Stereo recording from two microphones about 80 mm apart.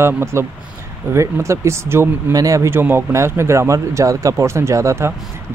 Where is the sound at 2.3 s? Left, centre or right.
Right.